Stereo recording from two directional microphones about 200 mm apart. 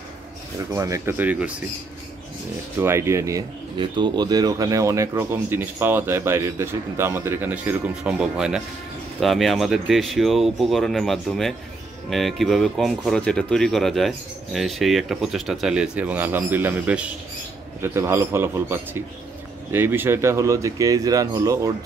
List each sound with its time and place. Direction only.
0.7 s speech: 15° right (ahead or behind)
2.8 s speech: 15° right (ahead or behind)